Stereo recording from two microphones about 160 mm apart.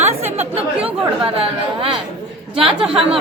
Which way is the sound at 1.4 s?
35° right (ahead or behind).